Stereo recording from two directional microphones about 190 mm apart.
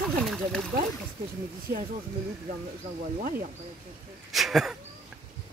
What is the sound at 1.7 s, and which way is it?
Speech, 55° right (ahead or behind).